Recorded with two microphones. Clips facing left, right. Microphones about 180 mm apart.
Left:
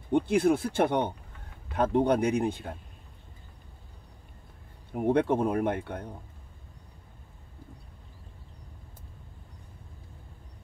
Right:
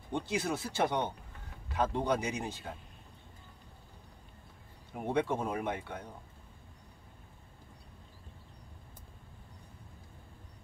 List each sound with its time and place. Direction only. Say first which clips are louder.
0.1 s speech: left 10 dB; 55° left (ahead or behind)
4.9 s speech: left 7 dB; 55° left (ahead or behind)